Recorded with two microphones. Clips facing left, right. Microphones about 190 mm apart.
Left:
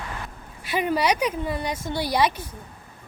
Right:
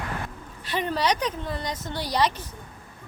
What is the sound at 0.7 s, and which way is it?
A woman's voice, 10° left (ahead or behind).